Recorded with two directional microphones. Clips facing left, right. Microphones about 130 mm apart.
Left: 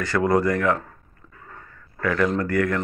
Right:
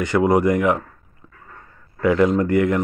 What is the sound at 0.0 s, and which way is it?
Speech, 15° right (ahead or behind).